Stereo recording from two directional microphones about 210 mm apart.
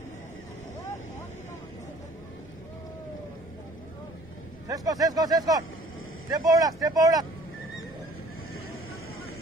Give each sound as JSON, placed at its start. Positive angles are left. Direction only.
{"t": 4.6, "sound": "speech", "side_deg": -15}